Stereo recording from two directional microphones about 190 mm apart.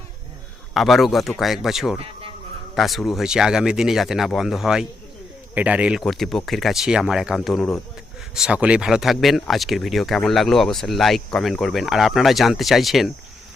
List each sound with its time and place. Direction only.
0.7 s speech: centre (ahead or behind)
2.0 s insect: 30° right (ahead or behind)
2.7 s speech: centre (ahead or behind)